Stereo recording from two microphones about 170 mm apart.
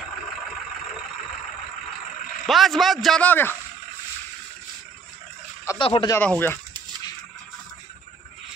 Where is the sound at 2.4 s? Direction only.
Centre (ahead or behind).